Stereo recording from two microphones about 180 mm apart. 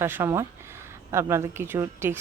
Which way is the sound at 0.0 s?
15° right (ahead or behind).